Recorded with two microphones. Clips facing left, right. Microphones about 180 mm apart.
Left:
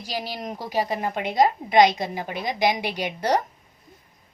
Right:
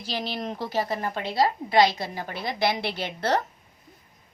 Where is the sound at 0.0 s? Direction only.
10° left (ahead or behind).